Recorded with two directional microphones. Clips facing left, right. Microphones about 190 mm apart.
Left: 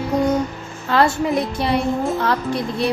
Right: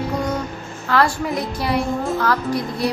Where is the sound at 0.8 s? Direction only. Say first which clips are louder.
Left 2 dB; 25° left (ahead or behind).